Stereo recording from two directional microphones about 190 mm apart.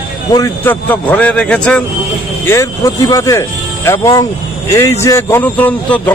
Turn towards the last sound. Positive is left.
turn(degrees=10)  # may be behind; listen again after turning